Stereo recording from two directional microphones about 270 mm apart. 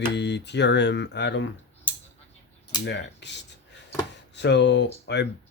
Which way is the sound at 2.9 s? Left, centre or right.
Left.